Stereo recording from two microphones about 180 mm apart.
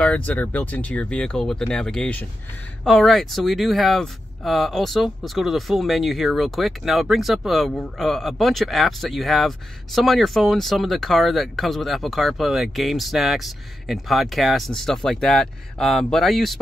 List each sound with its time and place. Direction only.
0.0 s speech: 10° left (ahead or behind)